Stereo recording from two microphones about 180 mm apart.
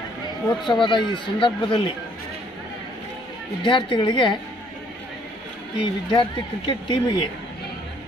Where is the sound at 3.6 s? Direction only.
25° left (ahead or behind).